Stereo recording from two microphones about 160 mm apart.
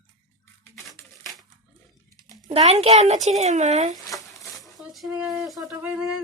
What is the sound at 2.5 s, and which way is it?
A child's voice, 40° right (ahead or behind).